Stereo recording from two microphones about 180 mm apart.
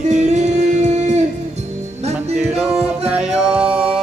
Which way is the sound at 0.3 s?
40° right (ahead or behind).